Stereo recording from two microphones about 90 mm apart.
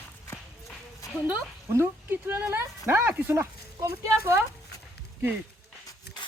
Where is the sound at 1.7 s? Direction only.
25° right (ahead or behind).